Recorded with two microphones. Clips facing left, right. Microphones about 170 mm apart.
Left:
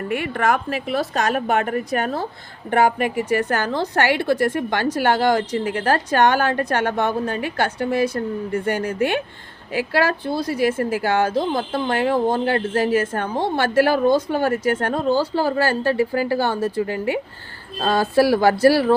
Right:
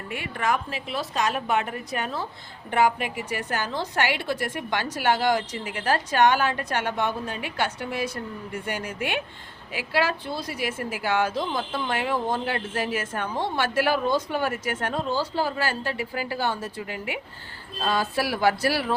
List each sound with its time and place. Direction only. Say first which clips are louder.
0.1 s a woman's voice: left 6 dB; 60° left (ahead or behind)
5.5 s a woman's voice: left 6 dB; 40° left (ahead or behind)
11.8 s a woman's voice: left 8 dB; 40° left (ahead or behind)
15.1 s speech: left 7 dB; 35° left (ahead or behind)